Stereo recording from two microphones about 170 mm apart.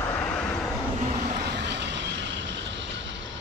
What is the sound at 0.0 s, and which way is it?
Vehicle, 10° left (ahead or behind).